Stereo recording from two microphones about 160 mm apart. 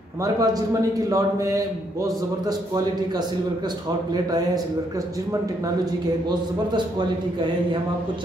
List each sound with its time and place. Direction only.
0.2 s speech: 25° right (ahead or behind)